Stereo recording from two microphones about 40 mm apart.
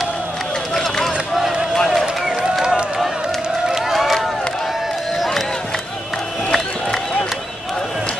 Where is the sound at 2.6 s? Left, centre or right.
Centre.